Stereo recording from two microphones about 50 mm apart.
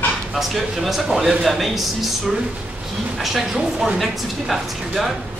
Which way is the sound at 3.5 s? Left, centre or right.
Centre.